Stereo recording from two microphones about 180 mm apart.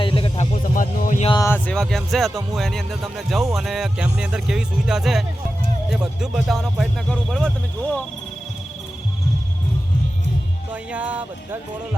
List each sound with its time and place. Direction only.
0.0 s music: 30° left (ahead or behind)
0.5 s speech: 50° left (ahead or behind)
1.3 s speech: 15° left (ahead or behind)
10.7 s speech: 10° right (ahead or behind)